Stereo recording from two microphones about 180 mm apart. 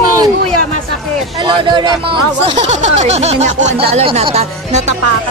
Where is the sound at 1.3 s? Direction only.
25° right (ahead or behind).